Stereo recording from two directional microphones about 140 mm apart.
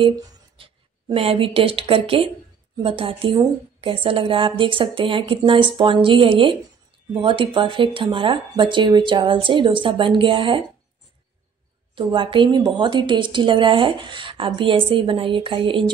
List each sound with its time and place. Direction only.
0.6 s a woman's voice: 40° right (ahead or behind)
11.9 s a woman's voice: 35° right (ahead or behind)